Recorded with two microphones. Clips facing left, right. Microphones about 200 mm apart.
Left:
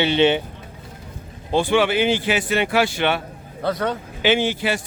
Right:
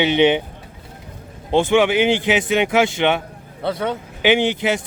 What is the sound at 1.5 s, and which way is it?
Speech, 20° right (ahead or behind).